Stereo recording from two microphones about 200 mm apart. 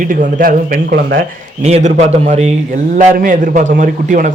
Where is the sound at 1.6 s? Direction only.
35° right (ahead or behind).